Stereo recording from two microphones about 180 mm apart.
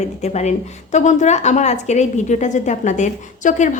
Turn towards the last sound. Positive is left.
turn(degrees=45)  # may be behind; listen again after turning